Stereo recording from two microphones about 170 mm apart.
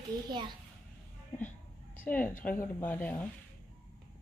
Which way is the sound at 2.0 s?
10° left (ahead or behind).